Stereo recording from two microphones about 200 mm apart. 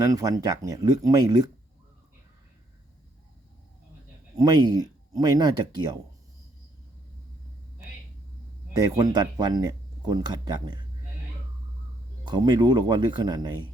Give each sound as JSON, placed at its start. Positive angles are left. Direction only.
{"t": 0.2, "sound": "speech", "side_deg": -15}
{"t": 4.4, "sound": "speech", "side_deg": -20}
{"t": 9.0, "sound": "speech", "side_deg": -20}
{"t": 12.2, "sound": "speech", "side_deg": -20}